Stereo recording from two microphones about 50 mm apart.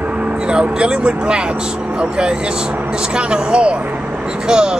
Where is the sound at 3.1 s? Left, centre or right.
Centre.